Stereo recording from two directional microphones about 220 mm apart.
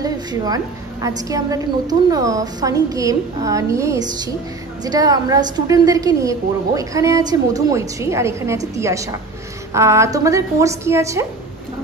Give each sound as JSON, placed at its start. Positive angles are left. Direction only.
{"t": 0.0, "sound": "a woman's voice", "side_deg": -15}